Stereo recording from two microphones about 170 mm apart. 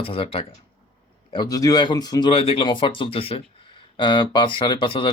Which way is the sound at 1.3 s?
20° left (ahead or behind).